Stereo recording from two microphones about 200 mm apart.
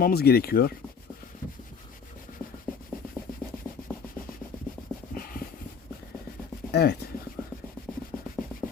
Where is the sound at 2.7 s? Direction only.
5° left (ahead or behind).